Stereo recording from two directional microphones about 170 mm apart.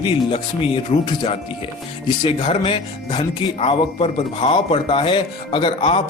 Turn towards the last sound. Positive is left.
turn(degrees=30)  # may be behind; listen again after turning